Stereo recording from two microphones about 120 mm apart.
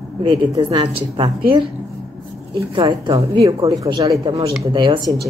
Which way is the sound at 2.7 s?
45° right (ahead or behind).